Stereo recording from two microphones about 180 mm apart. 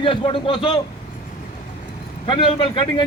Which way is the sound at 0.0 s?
30° left (ahead or behind).